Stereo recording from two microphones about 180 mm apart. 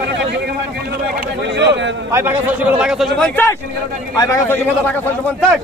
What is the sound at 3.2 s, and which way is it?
A man's voice, 10° left (ahead or behind).